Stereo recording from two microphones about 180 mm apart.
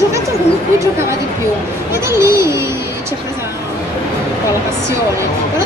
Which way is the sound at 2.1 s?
15° right (ahead or behind).